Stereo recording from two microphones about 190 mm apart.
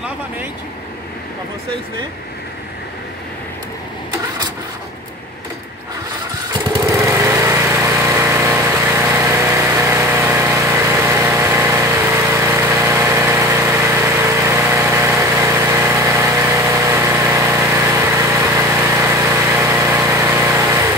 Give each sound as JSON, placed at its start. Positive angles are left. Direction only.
{"t": 6.5, "sound": "lawn mower", "side_deg": -20}